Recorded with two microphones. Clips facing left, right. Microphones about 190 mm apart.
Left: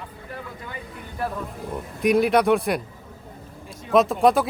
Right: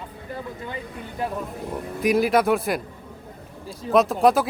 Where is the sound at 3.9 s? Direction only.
Centre (ahead or behind).